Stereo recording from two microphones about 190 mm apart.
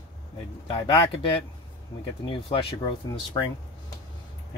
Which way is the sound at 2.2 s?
25° left (ahead or behind).